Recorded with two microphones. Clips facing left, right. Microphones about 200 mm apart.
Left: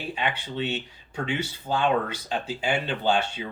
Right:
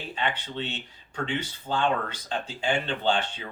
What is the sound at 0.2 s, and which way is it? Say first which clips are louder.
Speech: left 1 dB; 10° left (ahead or behind).